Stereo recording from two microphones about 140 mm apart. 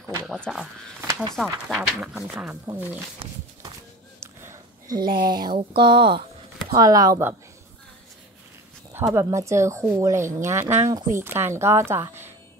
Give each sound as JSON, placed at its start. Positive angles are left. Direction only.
{"t": 0.3, "sound": "speech", "side_deg": 0}
{"t": 4.2, "sound": "a sound", "side_deg": -20}
{"t": 5.1, "sound": "speech", "side_deg": -30}
{"t": 9.0, "sound": "a woman's voice", "side_deg": -25}